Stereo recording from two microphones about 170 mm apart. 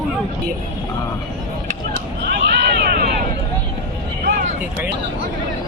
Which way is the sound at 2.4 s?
70° right (ahead or behind).